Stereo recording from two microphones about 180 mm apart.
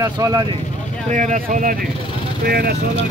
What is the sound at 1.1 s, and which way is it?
Speech, 45° right (ahead or behind).